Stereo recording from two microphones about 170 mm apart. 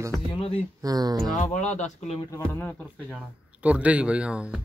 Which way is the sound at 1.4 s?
45° left (ahead or behind).